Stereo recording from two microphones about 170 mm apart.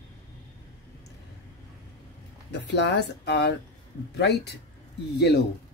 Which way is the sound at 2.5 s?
90° left.